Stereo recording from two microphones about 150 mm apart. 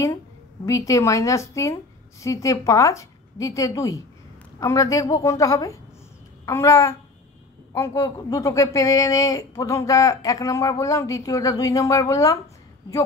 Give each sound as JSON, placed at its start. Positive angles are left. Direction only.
{"t": 0.7, "sound": "speech", "side_deg": 20}